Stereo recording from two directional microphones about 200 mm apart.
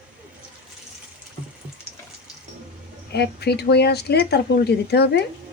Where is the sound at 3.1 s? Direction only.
55° left (ahead or behind).